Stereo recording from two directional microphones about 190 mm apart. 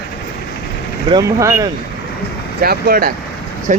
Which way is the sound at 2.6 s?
50° right (ahead or behind).